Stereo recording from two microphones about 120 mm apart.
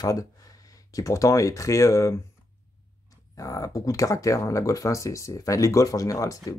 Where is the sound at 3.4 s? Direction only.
30° left (ahead or behind).